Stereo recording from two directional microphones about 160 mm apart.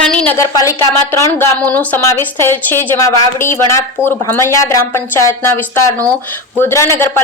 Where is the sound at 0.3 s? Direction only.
20° left (ahead or behind).